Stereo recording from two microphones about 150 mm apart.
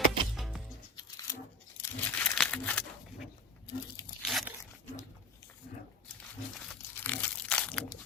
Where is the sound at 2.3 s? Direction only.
5° left (ahead or behind).